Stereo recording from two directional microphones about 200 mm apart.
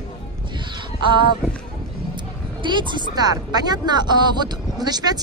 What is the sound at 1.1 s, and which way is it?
Speech, 25° right (ahead or behind).